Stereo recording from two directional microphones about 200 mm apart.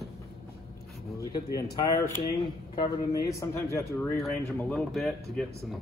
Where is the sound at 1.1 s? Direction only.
15° left (ahead or behind).